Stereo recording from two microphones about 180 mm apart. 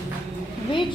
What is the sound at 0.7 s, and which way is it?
Vehicle, 25° left (ahead or behind).